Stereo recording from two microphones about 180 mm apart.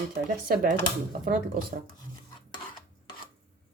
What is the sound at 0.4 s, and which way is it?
Speech, 55° right (ahead or behind).